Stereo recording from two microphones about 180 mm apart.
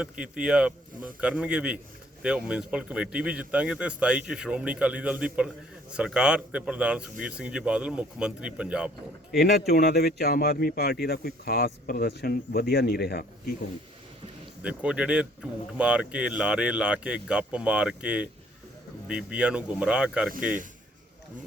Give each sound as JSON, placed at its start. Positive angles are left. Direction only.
{"t": 0.0, "sound": "speech", "side_deg": -5}
{"t": 9.3, "sound": "speech", "side_deg": 65}
{"t": 14.6, "sound": "speech", "side_deg": -5}
{"t": 20.3, "sound": "speech", "side_deg": -50}